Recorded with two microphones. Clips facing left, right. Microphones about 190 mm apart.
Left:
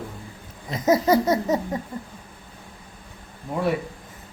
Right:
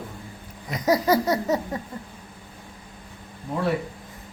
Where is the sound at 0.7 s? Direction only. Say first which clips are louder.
Left 2 dB; 25° left (ahead or behind).